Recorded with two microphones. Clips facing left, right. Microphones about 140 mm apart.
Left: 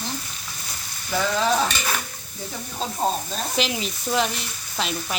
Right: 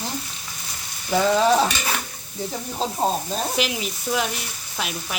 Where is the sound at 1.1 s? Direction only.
25° right (ahead or behind).